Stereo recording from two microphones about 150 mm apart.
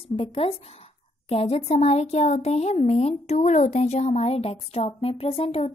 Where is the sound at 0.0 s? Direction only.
35° left (ahead or behind).